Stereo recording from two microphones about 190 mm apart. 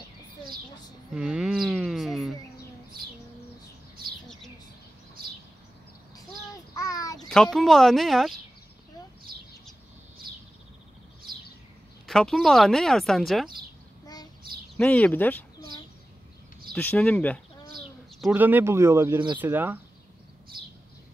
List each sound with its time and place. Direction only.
1.1 s a sound: 5° right (ahead or behind)
6.7 s child singing: 15° left (ahead or behind)
7.2 s speech: centre (ahead or behind)
12.1 s speech: centre (ahead or behind)
14.0 s child singing: 20° left (ahead or behind)
14.8 s speech: 5° left (ahead or behind)
16.7 s speech: 5° left (ahead or behind)
18.2 s speech: 10° right (ahead or behind)